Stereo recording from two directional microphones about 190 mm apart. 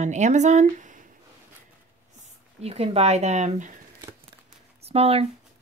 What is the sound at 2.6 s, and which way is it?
Speech, 30° right (ahead or behind).